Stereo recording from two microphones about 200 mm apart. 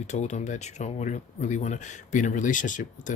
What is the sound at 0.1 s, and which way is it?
Speech, 35° left (ahead or behind).